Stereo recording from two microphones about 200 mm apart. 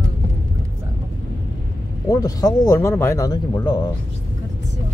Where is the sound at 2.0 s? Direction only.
20° left (ahead or behind).